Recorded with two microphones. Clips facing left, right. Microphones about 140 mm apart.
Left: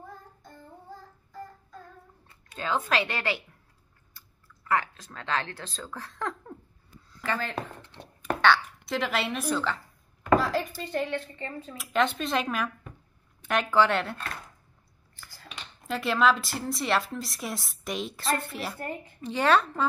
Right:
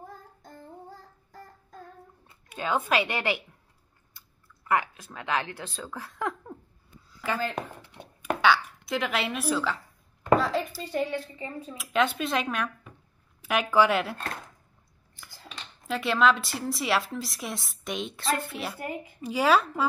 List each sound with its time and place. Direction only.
2.2 s speech: 15° right (ahead or behind)
4.6 s a woman's voice: 15° right (ahead or behind)
7.1 s a sound: 5° right (ahead or behind)
8.2 s a woman's voice: 5° right (ahead or behind)
15.1 s scissors: 20° right (ahead or behind)
15.4 s speech: centre (ahead or behind)